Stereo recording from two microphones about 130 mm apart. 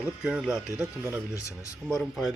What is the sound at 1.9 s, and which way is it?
Speech, centre (ahead or behind).